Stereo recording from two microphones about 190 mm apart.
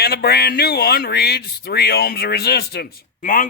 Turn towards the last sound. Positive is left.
turn(degrees=45)  # may be behind; listen again after turning